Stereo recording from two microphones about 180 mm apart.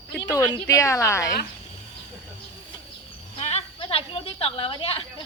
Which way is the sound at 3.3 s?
35° left (ahead or behind).